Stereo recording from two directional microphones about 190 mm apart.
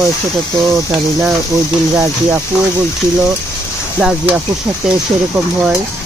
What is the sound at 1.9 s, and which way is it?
Speech, 15° right (ahead or behind).